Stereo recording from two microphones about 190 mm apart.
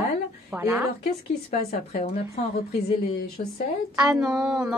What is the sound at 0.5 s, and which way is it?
Speech, 10° right (ahead or behind).